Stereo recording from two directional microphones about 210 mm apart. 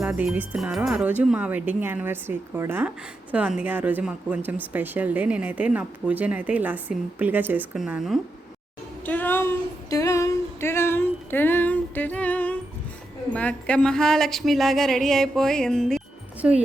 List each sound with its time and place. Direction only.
0.1 s speech: 10° right (ahead or behind)
9.0 s speech: 10° left (ahead or behind)
9.9 s music: 15° left (ahead or behind)
13.3 s a sound: 5° left (ahead or behind)